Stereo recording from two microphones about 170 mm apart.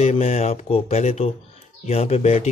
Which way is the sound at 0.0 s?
40° left (ahead or behind).